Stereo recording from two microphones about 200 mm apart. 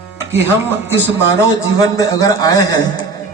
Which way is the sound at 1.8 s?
15° left (ahead or behind).